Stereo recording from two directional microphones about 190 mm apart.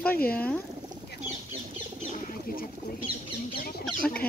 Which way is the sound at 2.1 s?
45° left (ahead or behind).